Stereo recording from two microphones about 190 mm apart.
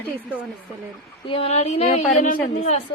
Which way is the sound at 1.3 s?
30° left (ahead or behind).